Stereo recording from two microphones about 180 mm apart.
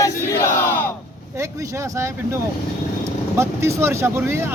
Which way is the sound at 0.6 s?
15° left (ahead or behind).